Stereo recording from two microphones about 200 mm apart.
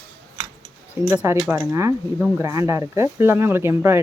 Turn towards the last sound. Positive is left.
turn(degrees=-10)  # may be behind; listen again after turning